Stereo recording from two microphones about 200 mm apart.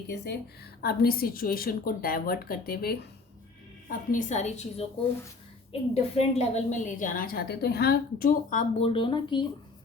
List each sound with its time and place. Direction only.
0.8 s a woman's voice: 50° left (ahead or behind)
3.8 s a woman's voice: 40° left (ahead or behind)
5.9 s a woman's voice: 30° left (ahead or behind)
8.9 s speech: 25° left (ahead or behind)